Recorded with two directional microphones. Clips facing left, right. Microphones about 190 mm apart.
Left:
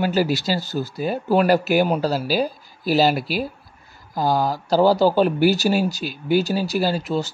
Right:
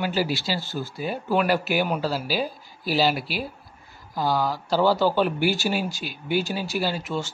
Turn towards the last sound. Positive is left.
turn(degrees=35)  # may be behind; listen again after turning